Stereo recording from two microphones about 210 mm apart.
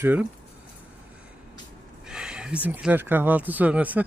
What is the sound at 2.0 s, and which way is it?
Speech, 5° right (ahead or behind).